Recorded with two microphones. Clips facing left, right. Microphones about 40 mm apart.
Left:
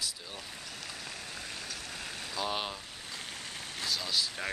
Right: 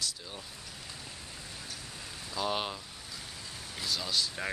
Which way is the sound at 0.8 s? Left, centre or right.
Left.